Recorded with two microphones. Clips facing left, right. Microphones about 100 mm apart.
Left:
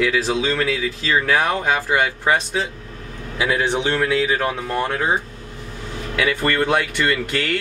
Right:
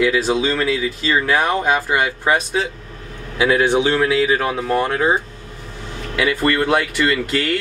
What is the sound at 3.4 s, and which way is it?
Speech, 25° right (ahead or behind).